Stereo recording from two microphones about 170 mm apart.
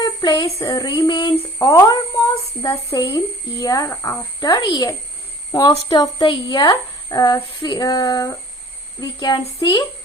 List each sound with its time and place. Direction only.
0.0 s speech: 25° left (ahead or behind)